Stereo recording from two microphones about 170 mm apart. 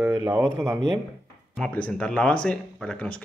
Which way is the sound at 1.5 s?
5° left (ahead or behind).